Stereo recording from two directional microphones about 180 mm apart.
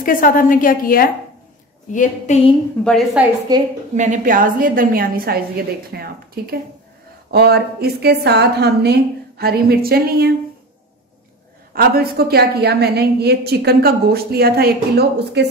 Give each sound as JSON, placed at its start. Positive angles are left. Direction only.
{"t": 0.0, "sound": "a woman's voice", "side_deg": 50}
{"t": 1.9, "sound": "a woman's voice", "side_deg": 40}
{"t": 2.8, "sound": "a woman's voice", "side_deg": 5}
{"t": 3.2, "sound": "a woman's voice", "side_deg": -5}
{"t": 3.9, "sound": "a woman's voice", "side_deg": -45}
{"t": 11.7, "sound": "a woman's voice", "side_deg": -55}